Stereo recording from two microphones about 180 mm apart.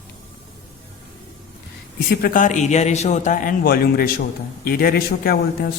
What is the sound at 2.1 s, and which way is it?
A man's voice, 50° left (ahead or behind).